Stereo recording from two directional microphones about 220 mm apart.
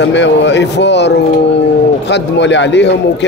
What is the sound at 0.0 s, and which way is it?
A man's voice, 55° left (ahead or behind).